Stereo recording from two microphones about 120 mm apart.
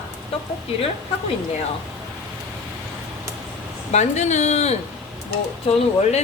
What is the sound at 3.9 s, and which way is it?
Speech, 75° left (ahead or behind).